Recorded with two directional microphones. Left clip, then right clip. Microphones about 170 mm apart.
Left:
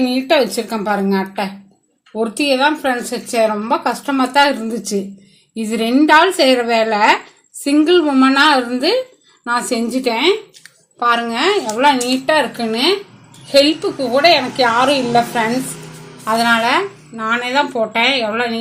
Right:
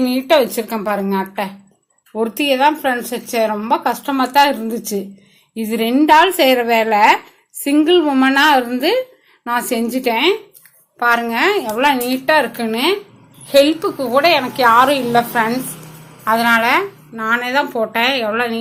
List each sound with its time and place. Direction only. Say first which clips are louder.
0.0 s a woman's voice: right 1 dB; 5° left (ahead or behind)